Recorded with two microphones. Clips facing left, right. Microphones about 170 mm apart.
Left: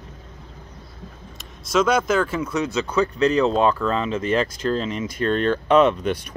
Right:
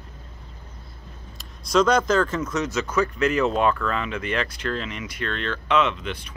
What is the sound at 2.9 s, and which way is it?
Speech, 30° left (ahead or behind).